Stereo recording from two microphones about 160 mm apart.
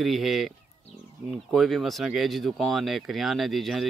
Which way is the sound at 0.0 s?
Centre (ahead or behind).